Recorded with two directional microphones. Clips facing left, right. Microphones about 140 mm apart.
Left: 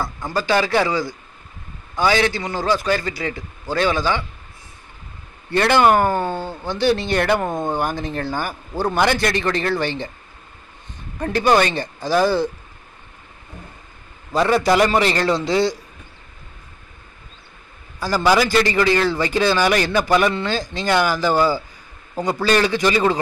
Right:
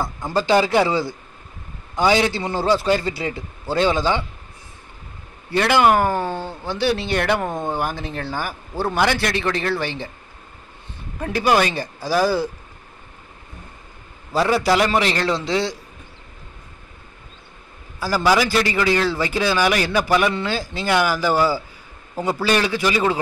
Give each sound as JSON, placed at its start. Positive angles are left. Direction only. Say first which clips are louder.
{"t": 0.0, "sound": "a man's voice", "louder": "right 1 dB", "side_deg": -20}
{"t": 5.5, "sound": "speech", "louder": "left 1 dB", "side_deg": -5}
{"t": 11.1, "sound": "speech", "louder": "left 2 dB", "side_deg": -5}
{"t": 14.3, "sound": "speech", "louder": "left 1 dB", "side_deg": -5}
{"t": 17.9, "sound": "speech", "louder": "left 1 dB", "side_deg": -5}